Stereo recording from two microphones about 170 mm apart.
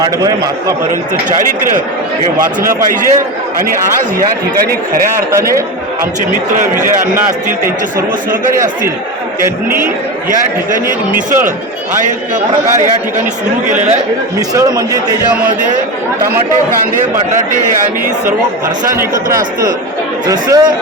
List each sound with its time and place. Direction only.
0.0 s a man's voice: 20° right (ahead or behind)
2.4 s speech: 50° right (ahead or behind)
5.3 s a man's voice: 15° right (ahead or behind)
6.8 s a man's voice: 55° right (ahead or behind)
10.2 s speech: 50° right (ahead or behind)
14.3 s a man's voice: 20° right (ahead or behind)
19.1 s speech: 50° right (ahead or behind)
20.2 s a man's voice: 25° right (ahead or behind)